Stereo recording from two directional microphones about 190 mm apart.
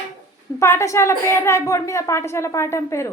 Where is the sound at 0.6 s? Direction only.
15° left (ahead or behind).